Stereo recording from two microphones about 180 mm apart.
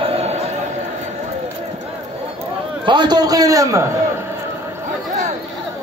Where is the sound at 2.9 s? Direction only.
25° right (ahead or behind).